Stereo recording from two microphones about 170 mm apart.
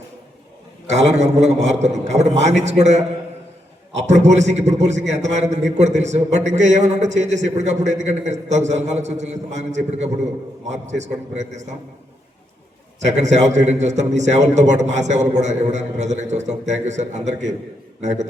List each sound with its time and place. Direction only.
0.9 s a man's voice: 40° right (ahead or behind)
4.0 s a man's voice: 45° right (ahead or behind)
13.0 s a man's voice: 40° right (ahead or behind)